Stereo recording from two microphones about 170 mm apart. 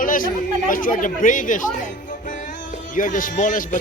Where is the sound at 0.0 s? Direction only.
55° left (ahead or behind).